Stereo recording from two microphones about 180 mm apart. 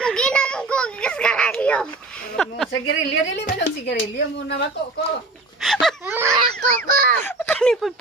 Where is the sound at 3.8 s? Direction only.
80° left.